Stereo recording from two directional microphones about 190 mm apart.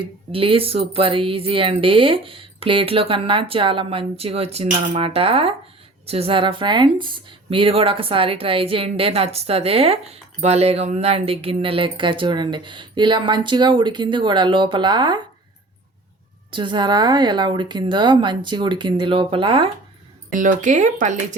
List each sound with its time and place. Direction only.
0.0 s a woman's voice: 30° right (ahead or behind)
16.5 s a woman's voice: 25° right (ahead or behind)
20.3 s speech: 45° right (ahead or behind)